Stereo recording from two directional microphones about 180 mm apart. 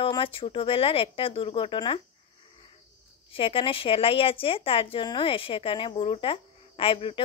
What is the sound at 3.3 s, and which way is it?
A woman's voice, 30° left (ahead or behind).